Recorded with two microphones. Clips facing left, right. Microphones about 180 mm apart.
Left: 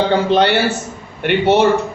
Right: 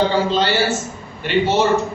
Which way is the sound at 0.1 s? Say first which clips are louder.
Left 4 dB; 60° left (ahead or behind).